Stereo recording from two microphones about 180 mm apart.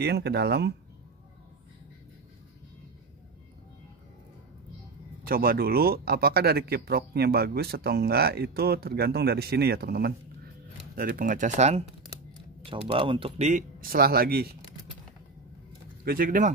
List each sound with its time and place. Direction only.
0.0 s speech: 65° right (ahead or behind)
5.2 s speech: 55° right (ahead or behind); by 11.8 s 40° right (ahead or behind)
12.6 s speech: 30° right (ahead or behind)
13.5 s speech: 50° right (ahead or behind)
16.0 s speech: 55° right (ahead or behind)